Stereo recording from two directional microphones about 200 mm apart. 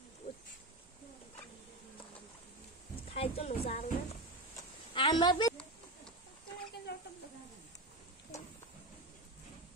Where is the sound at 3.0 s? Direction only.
30° left (ahead or behind).